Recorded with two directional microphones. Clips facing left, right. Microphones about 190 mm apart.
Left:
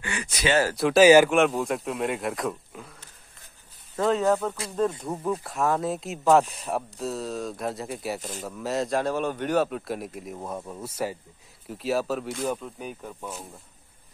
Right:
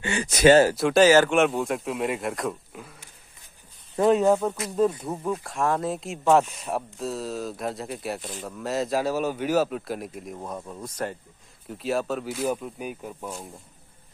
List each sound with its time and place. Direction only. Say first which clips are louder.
0.0 s speech: right 5 dB; 25° right (ahead or behind)
0.3 s speech: right 9 dB; 45° right (ahead or behind)
0.7 s speech: even; centre (ahead or behind)
1.0 s speech: left 3 dB; 10° left (ahead or behind)
1.3 s speech: even; centre (ahead or behind)
3.9 s speech: right 3 dB; 15° right (ahead or behind); by 13.6 s centre (ahead or behind)